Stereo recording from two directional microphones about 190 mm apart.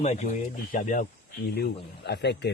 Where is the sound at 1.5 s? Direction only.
60° left (ahead or behind).